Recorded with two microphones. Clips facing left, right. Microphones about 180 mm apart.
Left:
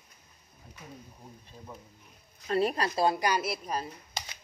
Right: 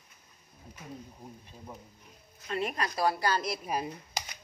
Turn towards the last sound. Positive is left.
turn(degrees=-10)  # may be behind; listen again after turning